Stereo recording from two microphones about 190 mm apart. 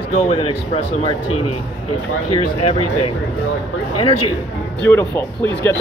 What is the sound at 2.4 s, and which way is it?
Speech, 30° left (ahead or behind).